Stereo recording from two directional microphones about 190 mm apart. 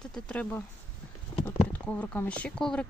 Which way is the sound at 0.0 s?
5° left (ahead or behind).